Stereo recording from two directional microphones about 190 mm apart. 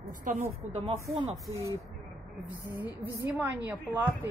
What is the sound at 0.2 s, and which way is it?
Speech, 40° right (ahead or behind).